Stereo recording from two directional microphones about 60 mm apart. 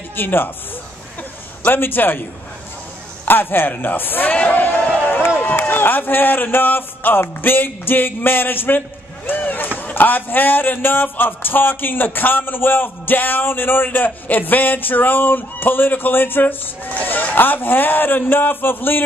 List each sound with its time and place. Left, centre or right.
0.1 s speech: left
1.7 s speech: left
3.3 s a man's voice: left